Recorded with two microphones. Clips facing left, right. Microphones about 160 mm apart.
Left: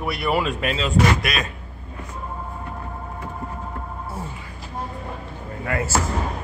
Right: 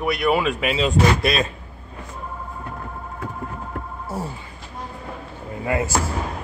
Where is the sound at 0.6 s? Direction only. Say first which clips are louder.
Right 3 dB; 15° right (ahead or behind).